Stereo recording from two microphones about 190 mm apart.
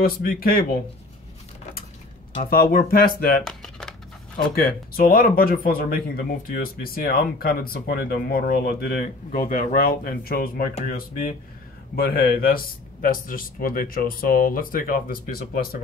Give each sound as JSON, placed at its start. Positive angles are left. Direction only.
{"t": 0.0, "sound": "speech", "side_deg": 50}
{"t": 2.5, "sound": "speech", "side_deg": 50}
{"t": 3.4, "sound": "a sound", "side_deg": 5}
{"t": 4.6, "sound": "speech", "side_deg": 50}